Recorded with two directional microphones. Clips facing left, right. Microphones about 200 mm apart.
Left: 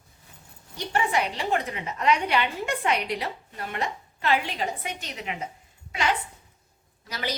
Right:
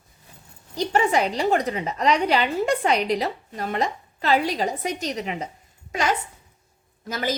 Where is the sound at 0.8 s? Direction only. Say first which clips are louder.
Right 5 dB; 40° right (ahead or behind).